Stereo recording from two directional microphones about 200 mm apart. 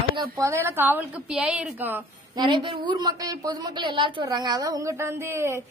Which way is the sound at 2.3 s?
25° right (ahead or behind).